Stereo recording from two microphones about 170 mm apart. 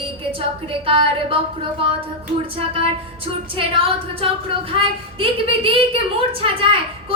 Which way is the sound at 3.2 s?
30° right (ahead or behind).